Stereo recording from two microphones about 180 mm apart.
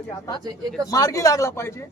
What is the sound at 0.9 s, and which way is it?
Speech, 20° left (ahead or behind).